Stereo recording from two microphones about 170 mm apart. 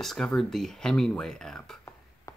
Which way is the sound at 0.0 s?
Centre (ahead or behind).